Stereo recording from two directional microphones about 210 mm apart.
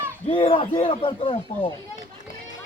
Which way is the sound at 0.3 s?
25° left (ahead or behind).